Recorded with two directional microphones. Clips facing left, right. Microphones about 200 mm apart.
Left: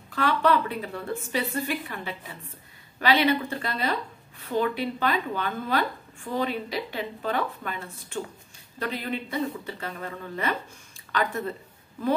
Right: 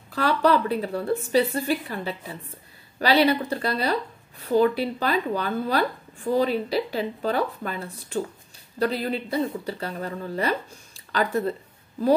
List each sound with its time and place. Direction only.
0.1 s a woman's voice: 35° right (ahead or behind)